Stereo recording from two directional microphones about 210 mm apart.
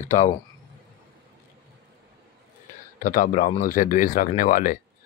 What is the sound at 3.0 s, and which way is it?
Speech, 40° left (ahead or behind).